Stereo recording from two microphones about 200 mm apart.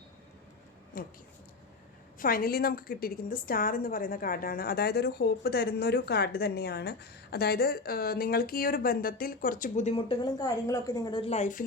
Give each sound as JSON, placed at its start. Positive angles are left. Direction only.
{"t": 0.9, "sound": "a woman's voice", "side_deg": 45}
{"t": 2.1, "sound": "a woman's voice", "side_deg": 45}